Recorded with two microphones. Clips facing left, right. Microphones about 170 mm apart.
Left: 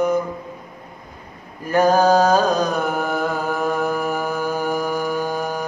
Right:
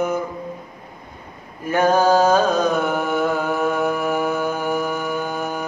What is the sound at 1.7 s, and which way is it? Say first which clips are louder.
Mantra: left 1 dB; centre (ahead or behind).